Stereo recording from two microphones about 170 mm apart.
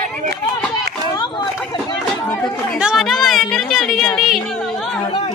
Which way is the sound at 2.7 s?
5° right (ahead or behind).